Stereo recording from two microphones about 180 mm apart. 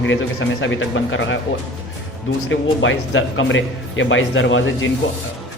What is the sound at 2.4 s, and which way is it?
A man's voice, 90° left.